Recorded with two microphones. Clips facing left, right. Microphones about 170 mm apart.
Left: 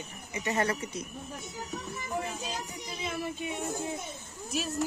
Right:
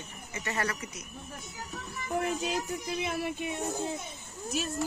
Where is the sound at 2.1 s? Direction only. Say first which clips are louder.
Right 5 dB; 60° right (ahead or behind).